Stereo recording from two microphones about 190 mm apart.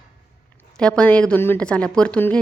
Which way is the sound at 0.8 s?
5° left (ahead or behind).